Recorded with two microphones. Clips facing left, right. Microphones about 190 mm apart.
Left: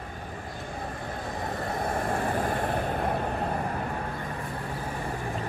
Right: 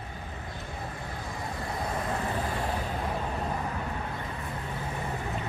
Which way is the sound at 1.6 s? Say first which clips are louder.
Left 3 dB; 55° left (ahead or behind).